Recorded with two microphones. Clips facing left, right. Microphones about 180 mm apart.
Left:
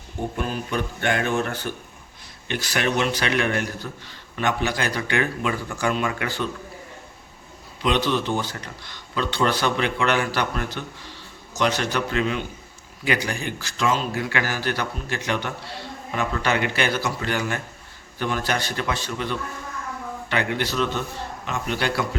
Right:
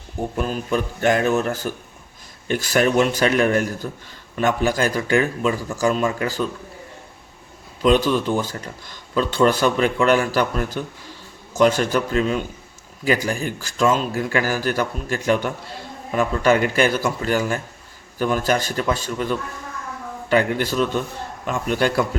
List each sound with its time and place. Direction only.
0.4 s a man's voice: 40° right (ahead or behind)
7.8 s a man's voice: 45° right (ahead or behind)